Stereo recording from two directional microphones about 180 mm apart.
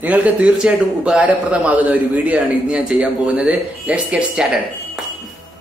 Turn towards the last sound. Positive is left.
turn(degrees=-5)  # may be behind; listen again after turning